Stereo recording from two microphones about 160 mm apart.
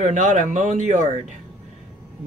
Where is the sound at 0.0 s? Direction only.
50° right (ahead or behind).